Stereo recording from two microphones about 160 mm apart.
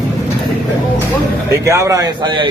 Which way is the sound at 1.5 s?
20° right (ahead or behind).